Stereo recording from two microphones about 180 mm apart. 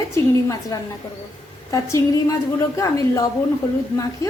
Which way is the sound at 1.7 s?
20° left (ahead or behind).